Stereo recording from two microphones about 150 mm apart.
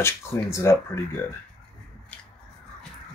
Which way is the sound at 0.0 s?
15° left (ahead or behind).